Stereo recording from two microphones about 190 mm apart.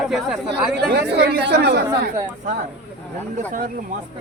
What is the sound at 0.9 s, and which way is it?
Speech, 55° right (ahead or behind).